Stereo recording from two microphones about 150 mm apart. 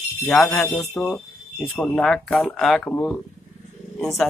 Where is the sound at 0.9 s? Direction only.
5° left (ahead or behind).